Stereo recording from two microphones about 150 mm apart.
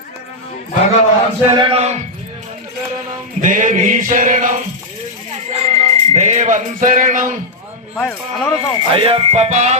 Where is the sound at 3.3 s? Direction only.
60° right (ahead or behind).